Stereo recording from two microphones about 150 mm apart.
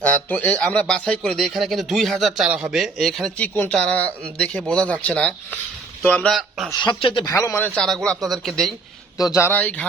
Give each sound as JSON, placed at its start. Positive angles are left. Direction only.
{"t": 0.0, "sound": "a man's voice", "side_deg": 10}
{"t": 7.0, "sound": "speech", "side_deg": 30}
{"t": 7.8, "sound": "speech", "side_deg": 5}
{"t": 9.1, "sound": "a man's voice", "side_deg": 25}